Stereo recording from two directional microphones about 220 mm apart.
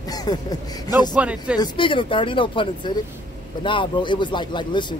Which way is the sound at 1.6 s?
20° left (ahead or behind).